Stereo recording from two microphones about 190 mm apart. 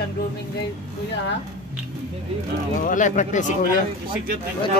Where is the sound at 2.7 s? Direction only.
45° left (ahead or behind).